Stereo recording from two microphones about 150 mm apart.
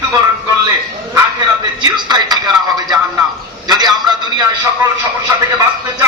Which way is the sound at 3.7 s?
25° right (ahead or behind).